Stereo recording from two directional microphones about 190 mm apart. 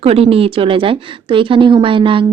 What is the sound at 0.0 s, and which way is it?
Speech, 30° right (ahead or behind).